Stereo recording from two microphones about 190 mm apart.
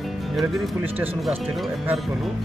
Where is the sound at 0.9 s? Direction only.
10° right (ahead or behind).